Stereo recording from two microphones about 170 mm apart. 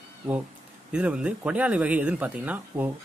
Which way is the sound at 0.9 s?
5° right (ahead or behind).